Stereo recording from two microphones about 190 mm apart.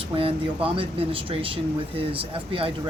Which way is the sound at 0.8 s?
30° right (ahead or behind).